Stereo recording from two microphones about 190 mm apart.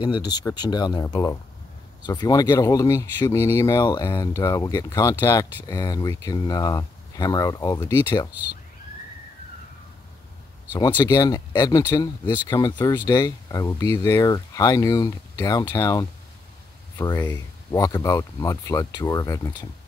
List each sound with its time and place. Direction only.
0.0 s speech: 20° left (ahead or behind)
10.7 s speech: 25° left (ahead or behind)
17.2 s speech: 10° left (ahead or behind)